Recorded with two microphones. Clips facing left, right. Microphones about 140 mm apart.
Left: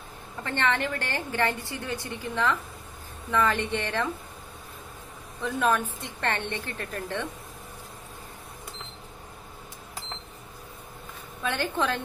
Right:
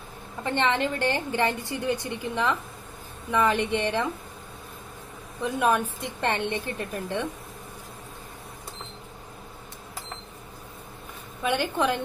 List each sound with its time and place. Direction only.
0.4 s a woman's voice: 20° right (ahead or behind)
5.4 s a woman's voice: 15° right (ahead or behind)
11.4 s a woman's voice: 15° right (ahead or behind)